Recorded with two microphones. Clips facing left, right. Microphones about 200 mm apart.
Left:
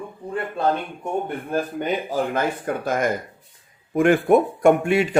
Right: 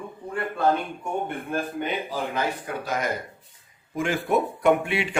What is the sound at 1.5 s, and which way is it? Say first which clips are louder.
Speech: left 5 dB; 45° left (ahead or behind).